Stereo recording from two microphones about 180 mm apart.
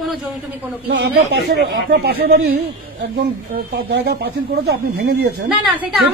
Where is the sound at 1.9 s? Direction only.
65° right (ahead or behind).